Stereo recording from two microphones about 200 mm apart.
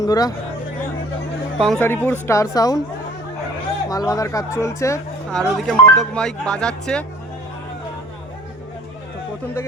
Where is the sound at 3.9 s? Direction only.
20° left (ahead or behind).